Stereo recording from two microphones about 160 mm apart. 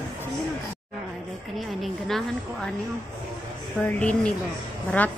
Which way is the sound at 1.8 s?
Centre (ahead or behind).